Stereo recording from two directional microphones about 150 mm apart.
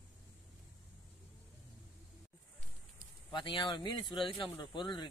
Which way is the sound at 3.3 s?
30° left (ahead or behind).